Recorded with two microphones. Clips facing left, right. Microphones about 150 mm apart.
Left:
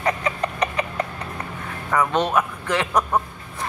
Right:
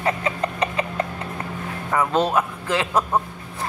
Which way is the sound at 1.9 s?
30° right (ahead or behind).